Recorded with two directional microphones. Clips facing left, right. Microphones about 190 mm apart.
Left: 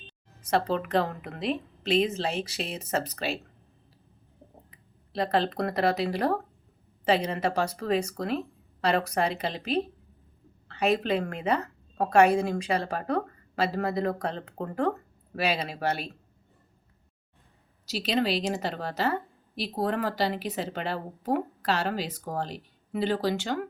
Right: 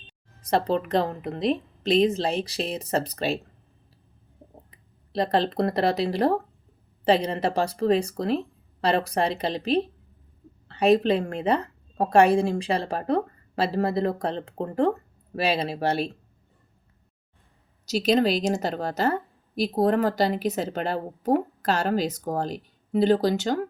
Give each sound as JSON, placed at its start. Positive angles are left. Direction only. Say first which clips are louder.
{"t": 0.4, "sound": "a woman's voice", "louder": "right 3 dB", "side_deg": -35}
{"t": 4.7, "sound": "a woman's voice", "louder": "right 5 dB", "side_deg": -35}
{"t": 17.8, "sound": "speech", "louder": "right 6 dB", "side_deg": -45}